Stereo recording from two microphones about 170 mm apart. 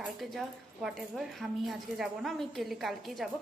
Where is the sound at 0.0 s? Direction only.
Centre (ahead or behind).